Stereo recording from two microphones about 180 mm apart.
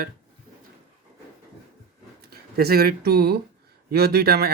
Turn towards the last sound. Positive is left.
turn(degrees=-60)  # may be behind; listen again after turning